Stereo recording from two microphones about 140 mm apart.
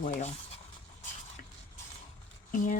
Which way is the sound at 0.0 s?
55° left (ahead or behind).